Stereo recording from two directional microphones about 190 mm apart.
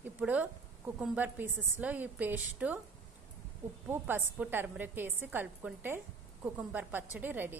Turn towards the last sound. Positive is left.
turn(degrees=-10)  # may be behind; listen again after turning